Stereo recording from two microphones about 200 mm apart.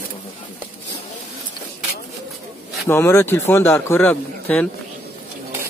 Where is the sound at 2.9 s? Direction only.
15° left (ahead or behind).